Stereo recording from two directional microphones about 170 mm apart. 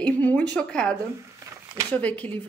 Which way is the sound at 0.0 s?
10° left (ahead or behind).